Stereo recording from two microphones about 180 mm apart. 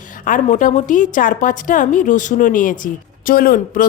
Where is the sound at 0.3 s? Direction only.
45° left (ahead or behind).